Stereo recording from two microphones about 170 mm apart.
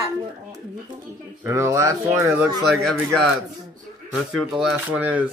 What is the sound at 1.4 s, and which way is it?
A child's voice, 15° right (ahead or behind).